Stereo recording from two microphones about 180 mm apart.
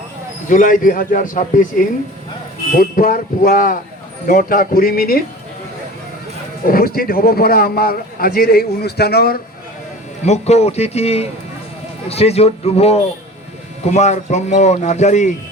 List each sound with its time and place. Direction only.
0.4 s speech: 45° left (ahead or behind)
6.7 s a man's voice: 55° left (ahead or behind)
10.2 s speech: 40° left (ahead or behind)